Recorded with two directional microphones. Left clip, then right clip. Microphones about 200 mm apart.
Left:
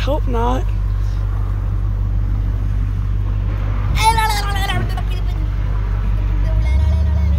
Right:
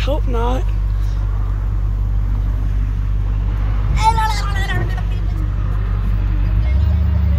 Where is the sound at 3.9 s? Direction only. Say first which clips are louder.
Left 1 dB; 40° left (ahead or behind).